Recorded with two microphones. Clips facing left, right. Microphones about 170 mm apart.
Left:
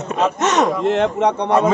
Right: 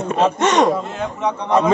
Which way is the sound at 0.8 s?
75° left (ahead or behind).